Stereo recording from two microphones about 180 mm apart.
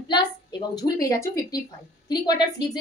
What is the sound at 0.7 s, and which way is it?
A woman's voice, 20° left (ahead or behind).